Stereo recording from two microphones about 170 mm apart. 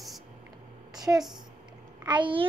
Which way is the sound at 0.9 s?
20° right (ahead or behind).